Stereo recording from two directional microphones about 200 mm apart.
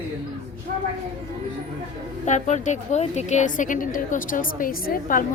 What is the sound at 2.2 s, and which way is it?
A woman's voice, 35° left (ahead or behind).